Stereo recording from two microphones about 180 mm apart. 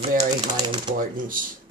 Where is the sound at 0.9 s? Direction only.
50° right (ahead or behind).